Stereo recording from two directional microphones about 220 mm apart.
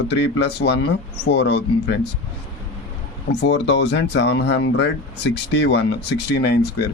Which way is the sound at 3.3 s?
55° left (ahead or behind).